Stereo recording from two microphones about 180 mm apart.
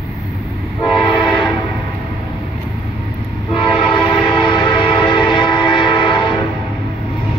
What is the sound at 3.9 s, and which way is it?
Train, 25° left (ahead or behind).